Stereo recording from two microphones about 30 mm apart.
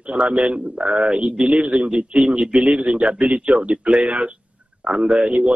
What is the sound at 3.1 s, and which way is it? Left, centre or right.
A man's voice, right.